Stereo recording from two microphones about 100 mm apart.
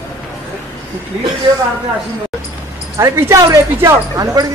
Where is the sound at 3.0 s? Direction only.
30° right (ahead or behind).